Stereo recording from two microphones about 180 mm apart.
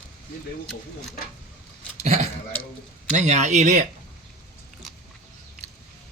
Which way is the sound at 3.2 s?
40° right (ahead or behind).